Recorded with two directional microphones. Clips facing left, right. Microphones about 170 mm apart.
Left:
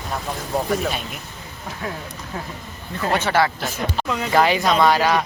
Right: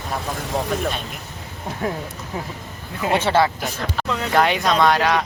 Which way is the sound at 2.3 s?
15° right (ahead or behind).